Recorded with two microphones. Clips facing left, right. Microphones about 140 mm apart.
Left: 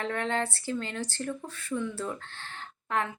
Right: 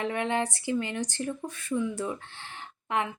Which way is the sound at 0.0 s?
15° right (ahead or behind).